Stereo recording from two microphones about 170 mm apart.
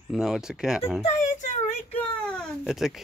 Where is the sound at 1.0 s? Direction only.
45° left (ahead or behind).